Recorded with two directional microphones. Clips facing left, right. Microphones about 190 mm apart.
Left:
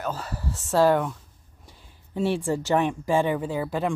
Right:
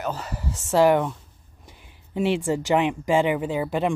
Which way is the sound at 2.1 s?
15° right (ahead or behind).